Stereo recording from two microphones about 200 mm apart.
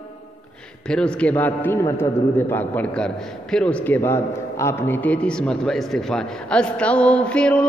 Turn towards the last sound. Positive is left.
turn(degrees=5)  # may be behind; listen again after turning